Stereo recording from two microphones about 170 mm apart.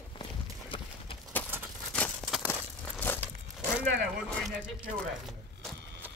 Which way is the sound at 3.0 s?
10° left (ahead or behind).